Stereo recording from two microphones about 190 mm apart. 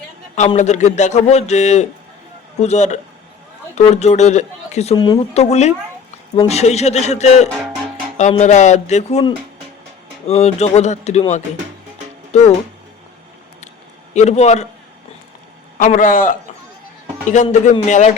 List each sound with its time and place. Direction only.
0.3 s a man's voice: 35° left (ahead or behind)
4.9 s speech: 20° left (ahead or behind)
5.3 s a man's voice: 35° left (ahead or behind)
14.1 s a man's voice: 35° left (ahead or behind)
15.8 s a man's voice: 45° left (ahead or behind)